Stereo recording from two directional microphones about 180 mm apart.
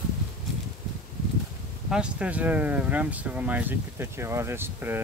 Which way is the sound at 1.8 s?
5° right (ahead or behind).